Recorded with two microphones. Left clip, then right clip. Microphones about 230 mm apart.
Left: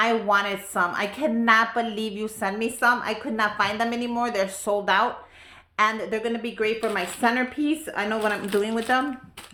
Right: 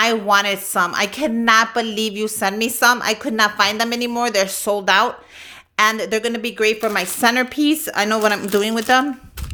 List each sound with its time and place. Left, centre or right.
0.0 s a woman's voice: right